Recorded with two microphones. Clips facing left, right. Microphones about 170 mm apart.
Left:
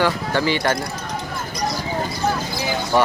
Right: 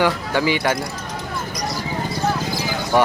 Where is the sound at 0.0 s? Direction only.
10° right (ahead or behind).